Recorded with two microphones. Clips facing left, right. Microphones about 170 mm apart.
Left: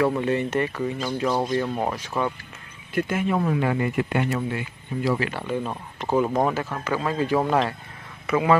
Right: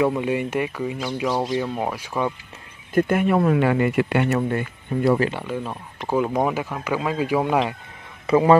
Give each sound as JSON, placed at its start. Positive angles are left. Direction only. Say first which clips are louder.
{"t": 0.1, "sound": "speech", "louder": "even", "side_deg": -10}
{"t": 2.9, "sound": "speech", "louder": "right 5 dB", "side_deg": -55}
{"t": 5.4, "sound": "speech", "louder": "left 1 dB", "side_deg": 0}
{"t": 6.3, "sound": "speech", "louder": "right 1 dB", "side_deg": -10}
{"t": 8.3, "sound": "a man's voice", "louder": "right 5 dB", "side_deg": -35}